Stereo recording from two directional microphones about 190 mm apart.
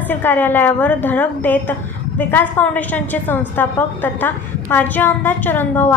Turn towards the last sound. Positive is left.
turn(degrees=10)  # may be behind; listen again after turning